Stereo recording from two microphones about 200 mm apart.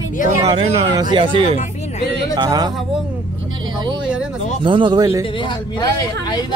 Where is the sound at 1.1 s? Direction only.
25° right (ahead or behind).